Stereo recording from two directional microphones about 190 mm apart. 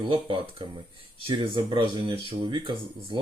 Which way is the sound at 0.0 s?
30° right (ahead or behind).